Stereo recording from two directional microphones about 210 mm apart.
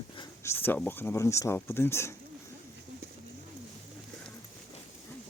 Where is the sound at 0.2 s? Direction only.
10° left (ahead or behind).